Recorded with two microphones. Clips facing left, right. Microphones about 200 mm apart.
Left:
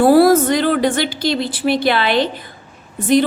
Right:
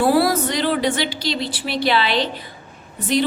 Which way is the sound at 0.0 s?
50° left (ahead or behind).